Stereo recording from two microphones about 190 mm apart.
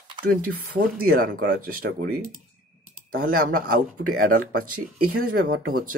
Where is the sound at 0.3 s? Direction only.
50° right (ahead or behind).